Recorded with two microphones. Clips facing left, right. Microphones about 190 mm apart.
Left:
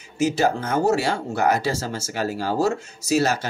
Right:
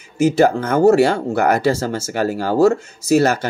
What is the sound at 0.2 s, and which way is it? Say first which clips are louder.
Speech: right 6 dB; 55° right (ahead or behind).